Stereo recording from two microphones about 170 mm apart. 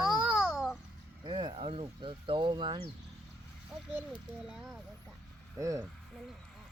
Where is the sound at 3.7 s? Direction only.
5° right (ahead or behind).